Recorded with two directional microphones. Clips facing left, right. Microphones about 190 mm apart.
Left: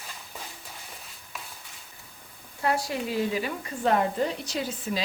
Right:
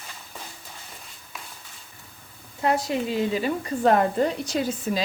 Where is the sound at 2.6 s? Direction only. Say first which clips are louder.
Right 4 dB; 20° right (ahead or behind).